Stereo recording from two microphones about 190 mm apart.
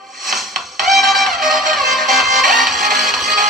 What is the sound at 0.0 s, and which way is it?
Music, centre (ahead or behind).